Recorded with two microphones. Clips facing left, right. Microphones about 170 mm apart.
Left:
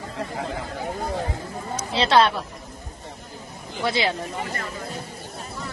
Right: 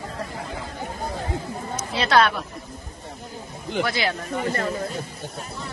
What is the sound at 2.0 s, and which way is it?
Speech, 25° left (ahead or behind).